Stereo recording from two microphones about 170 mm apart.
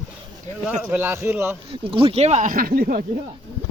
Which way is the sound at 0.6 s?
10° right (ahead or behind).